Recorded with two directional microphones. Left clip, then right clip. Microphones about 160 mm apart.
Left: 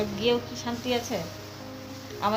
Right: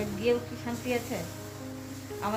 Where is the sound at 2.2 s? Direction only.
20° left (ahead or behind).